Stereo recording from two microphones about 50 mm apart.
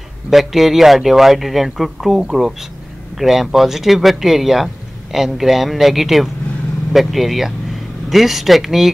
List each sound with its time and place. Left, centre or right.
0.3 s speech: centre